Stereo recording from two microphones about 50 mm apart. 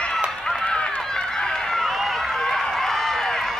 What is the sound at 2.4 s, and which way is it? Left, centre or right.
Run, centre.